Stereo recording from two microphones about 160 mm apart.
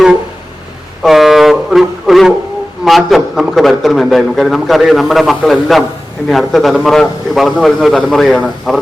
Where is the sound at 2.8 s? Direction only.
Centre (ahead or behind).